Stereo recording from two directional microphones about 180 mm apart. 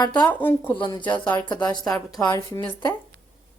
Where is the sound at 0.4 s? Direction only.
10° left (ahead or behind).